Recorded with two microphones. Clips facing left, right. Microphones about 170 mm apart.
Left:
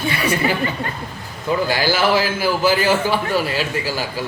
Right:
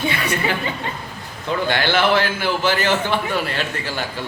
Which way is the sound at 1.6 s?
5° left (ahead or behind).